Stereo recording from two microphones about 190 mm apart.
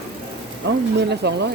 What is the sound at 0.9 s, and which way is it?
Speech, 60° right (ahead or behind).